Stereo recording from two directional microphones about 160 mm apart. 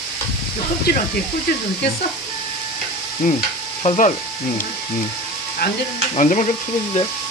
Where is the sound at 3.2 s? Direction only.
55° left (ahead or behind).